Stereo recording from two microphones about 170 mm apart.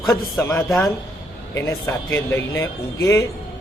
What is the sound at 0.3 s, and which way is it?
A man's voice, 15° left (ahead or behind).